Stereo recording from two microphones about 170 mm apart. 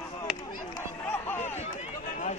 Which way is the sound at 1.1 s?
10° left (ahead or behind).